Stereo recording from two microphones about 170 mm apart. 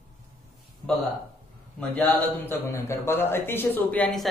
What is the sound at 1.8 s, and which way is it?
A man's voice, 10° left (ahead or behind).